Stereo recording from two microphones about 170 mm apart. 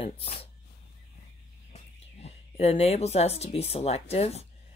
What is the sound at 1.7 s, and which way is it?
Speech, 40° left (ahead or behind).